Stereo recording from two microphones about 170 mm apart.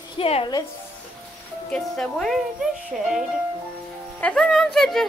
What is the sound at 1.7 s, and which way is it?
Speech, 5° left (ahead or behind).